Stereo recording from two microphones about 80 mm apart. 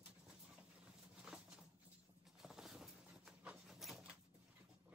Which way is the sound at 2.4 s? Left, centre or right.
Centre.